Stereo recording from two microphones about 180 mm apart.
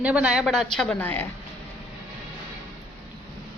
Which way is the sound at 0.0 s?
5° right (ahead or behind).